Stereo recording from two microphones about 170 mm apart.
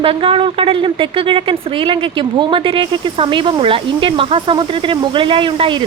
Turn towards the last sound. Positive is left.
turn(degrees=-30)  # may be behind; listen again after turning